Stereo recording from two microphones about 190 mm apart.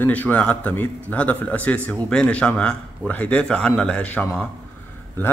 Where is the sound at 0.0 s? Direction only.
10° left (ahead or behind).